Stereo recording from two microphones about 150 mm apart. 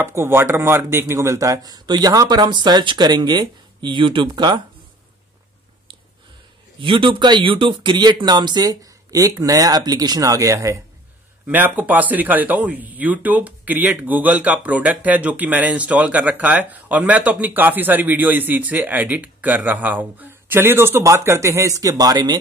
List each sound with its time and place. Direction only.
0.0 s speech: 15° right (ahead or behind)
6.8 s speech: 35° right (ahead or behind)